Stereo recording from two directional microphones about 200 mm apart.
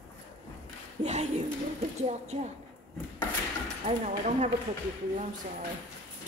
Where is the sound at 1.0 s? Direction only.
35° right (ahead or behind).